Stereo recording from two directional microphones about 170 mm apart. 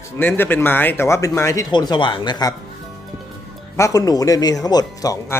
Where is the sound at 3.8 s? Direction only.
20° left (ahead or behind).